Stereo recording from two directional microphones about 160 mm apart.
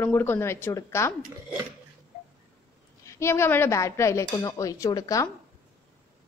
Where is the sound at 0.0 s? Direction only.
15° left (ahead or behind).